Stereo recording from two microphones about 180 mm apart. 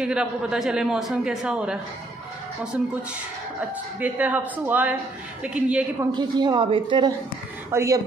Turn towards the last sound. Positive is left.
turn(degrees=-15)  # may be behind; listen again after turning